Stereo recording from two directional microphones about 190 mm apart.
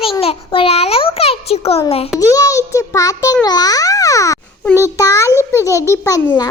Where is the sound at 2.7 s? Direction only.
15° left (ahead or behind).